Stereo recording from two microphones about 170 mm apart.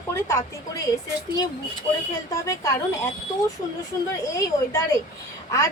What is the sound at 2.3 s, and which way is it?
Speech, 20° left (ahead or behind).